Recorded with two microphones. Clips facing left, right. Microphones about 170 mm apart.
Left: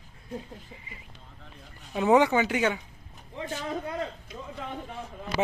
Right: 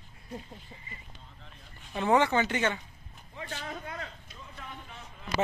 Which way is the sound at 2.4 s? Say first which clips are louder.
Left 3 dB; 5° left (ahead or behind).